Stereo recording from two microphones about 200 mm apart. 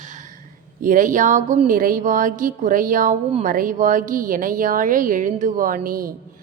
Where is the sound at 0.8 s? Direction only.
40° right (ahead or behind).